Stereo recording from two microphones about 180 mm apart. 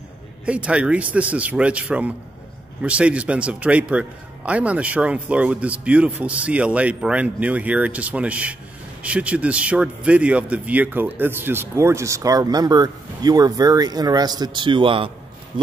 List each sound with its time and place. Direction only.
0.5 s speech: 5° right (ahead or behind); by 15.7 s 25° right (ahead or behind)